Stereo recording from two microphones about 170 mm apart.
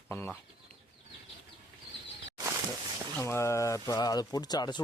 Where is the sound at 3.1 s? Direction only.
15° left (ahead or behind).